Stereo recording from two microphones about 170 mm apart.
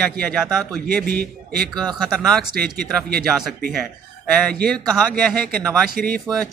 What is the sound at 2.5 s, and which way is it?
Speech, 60° right (ahead or behind).